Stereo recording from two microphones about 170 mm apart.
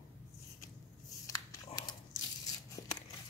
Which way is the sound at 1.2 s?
20° left (ahead or behind).